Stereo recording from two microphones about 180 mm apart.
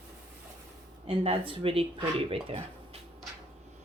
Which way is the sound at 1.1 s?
30° right (ahead or behind).